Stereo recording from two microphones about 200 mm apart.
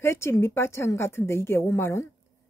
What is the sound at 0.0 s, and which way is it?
Speech, 15° left (ahead or behind).